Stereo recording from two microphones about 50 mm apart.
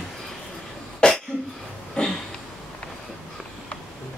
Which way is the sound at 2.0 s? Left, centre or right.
Centre.